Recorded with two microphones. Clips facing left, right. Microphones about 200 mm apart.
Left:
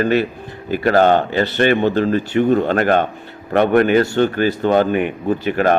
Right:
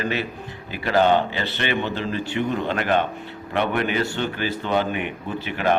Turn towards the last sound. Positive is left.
turn(degrees=45)  # may be behind; listen again after turning